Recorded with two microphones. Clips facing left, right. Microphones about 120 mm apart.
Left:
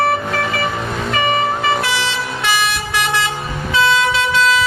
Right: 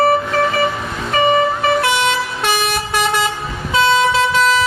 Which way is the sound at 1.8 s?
50° right (ahead or behind).